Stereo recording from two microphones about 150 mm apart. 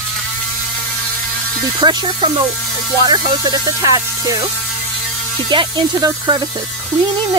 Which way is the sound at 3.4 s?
25° right (ahead or behind).